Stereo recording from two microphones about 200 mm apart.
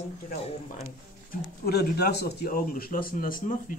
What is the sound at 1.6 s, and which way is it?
Speech, 55° left (ahead or behind).